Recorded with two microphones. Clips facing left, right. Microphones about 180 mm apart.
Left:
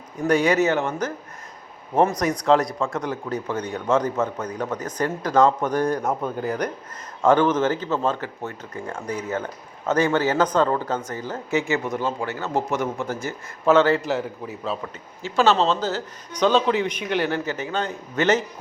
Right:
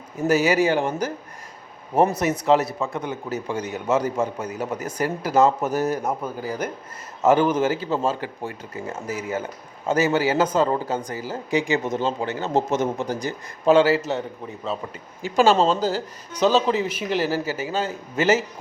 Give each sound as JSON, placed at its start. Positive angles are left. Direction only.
{"t": 0.2, "sound": "speech", "side_deg": -5}
{"t": 2.1, "sound": "speech", "side_deg": -5}
{"t": 15.2, "sound": "speech", "side_deg": -15}